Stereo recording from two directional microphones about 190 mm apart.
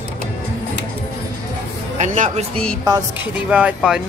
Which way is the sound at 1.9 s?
40° right (ahead or behind).